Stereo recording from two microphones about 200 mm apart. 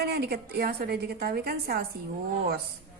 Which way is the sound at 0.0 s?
50° right (ahead or behind).